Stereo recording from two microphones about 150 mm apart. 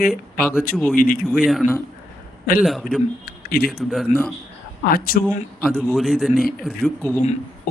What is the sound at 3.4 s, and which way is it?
Speech, 90° left.